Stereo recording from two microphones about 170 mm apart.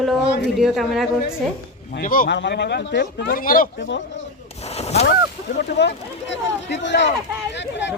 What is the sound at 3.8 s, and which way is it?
Speech, 90° left.